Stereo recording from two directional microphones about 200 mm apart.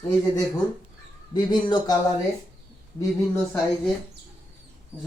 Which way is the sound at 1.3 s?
20° left (ahead or behind).